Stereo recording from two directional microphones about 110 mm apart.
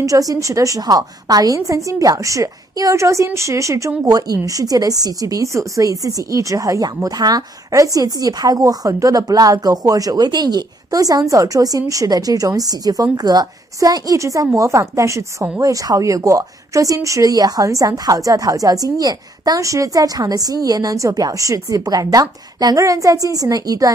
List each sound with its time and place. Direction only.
0.0 s a woman's voice: 30° right (ahead or behind)